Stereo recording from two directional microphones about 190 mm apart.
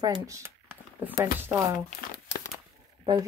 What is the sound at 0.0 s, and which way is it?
Speech, 15° right (ahead or behind).